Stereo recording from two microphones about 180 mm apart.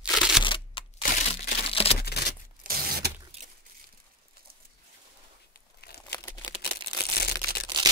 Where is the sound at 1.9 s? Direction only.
60° left (ahead or behind).